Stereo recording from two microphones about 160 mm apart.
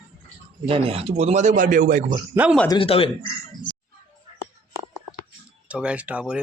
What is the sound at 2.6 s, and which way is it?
Speech, 35° left (ahead or behind).